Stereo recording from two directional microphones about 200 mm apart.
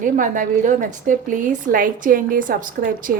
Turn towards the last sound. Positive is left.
turn(degrees=-45)  # may be behind; listen again after turning